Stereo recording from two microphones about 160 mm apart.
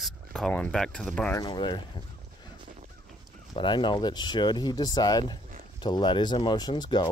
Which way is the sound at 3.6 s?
30° left (ahead or behind).